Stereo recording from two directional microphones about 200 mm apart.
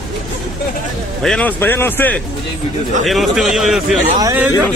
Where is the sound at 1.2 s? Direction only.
5° left (ahead or behind).